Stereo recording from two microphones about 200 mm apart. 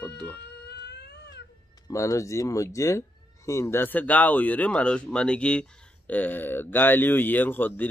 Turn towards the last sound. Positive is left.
turn(degrees=10)  # may be behind; listen again after turning